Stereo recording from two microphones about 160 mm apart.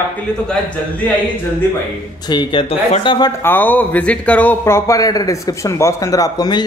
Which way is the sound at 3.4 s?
10° left (ahead or behind).